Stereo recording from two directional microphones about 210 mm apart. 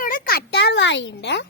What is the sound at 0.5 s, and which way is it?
Speech, 55° left (ahead or behind).